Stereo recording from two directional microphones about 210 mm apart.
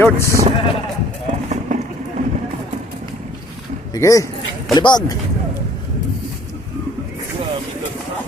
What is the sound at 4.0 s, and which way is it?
Speech, 15° left (ahead or behind).